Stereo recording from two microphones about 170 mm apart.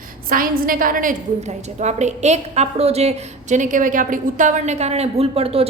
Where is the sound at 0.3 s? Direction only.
55° right (ahead or behind).